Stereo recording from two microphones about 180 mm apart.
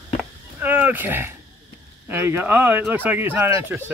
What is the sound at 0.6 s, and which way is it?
Speech, 10° right (ahead or behind).